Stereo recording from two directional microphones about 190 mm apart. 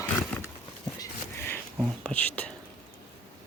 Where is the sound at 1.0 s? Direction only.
10° left (ahead or behind).